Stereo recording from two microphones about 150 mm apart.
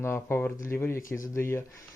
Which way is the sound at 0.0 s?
15° left (ahead or behind).